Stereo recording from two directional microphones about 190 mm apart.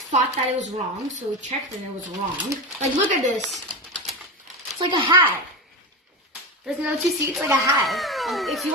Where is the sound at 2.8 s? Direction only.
40° right (ahead or behind).